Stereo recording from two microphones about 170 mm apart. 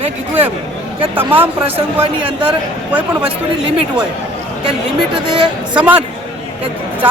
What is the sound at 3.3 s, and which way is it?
Speech, 30° right (ahead or behind).